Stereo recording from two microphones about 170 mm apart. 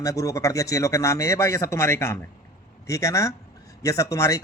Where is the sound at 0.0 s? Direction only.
20° left (ahead or behind).